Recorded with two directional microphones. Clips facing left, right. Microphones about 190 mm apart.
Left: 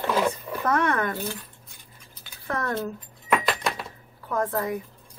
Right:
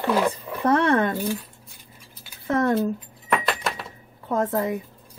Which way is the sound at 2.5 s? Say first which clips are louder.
Right 7 dB; 20° right (ahead or behind).